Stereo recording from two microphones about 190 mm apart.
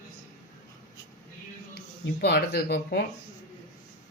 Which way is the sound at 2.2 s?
55° left (ahead or behind).